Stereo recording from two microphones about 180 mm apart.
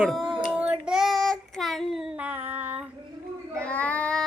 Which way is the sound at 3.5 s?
5° left (ahead or behind).